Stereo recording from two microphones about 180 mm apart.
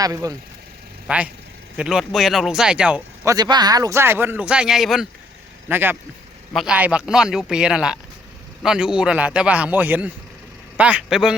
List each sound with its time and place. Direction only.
0.0 s speech: 20° right (ahead or behind)
1.0 s speech: 5° right (ahead or behind)
3.2 s a man's voice: 20° right (ahead or behind); by 11.3 s 5° right (ahead or behind)